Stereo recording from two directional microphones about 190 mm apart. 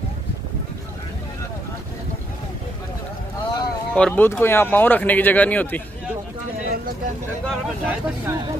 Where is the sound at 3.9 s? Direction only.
10° left (ahead or behind).